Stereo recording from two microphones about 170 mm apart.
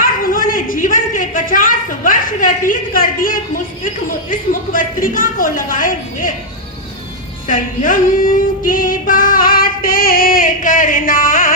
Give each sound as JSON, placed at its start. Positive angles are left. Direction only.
{"t": 0.0, "sound": "a sound", "side_deg": 55}
{"t": 4.3, "sound": "a woman's voice", "side_deg": 55}
{"t": 7.4, "sound": "music", "side_deg": 50}